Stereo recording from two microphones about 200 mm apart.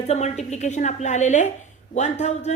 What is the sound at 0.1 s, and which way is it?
A woman's voice, 35° left (ahead or behind).